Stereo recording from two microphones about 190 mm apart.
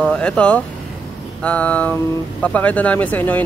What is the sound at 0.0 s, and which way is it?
Speech, 5° left (ahead or behind).